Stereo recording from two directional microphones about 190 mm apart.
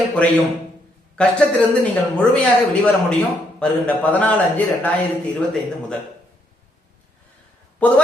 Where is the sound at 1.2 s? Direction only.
5° left (ahead or behind).